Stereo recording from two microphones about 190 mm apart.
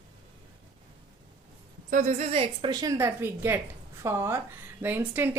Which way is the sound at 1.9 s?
40° right (ahead or behind).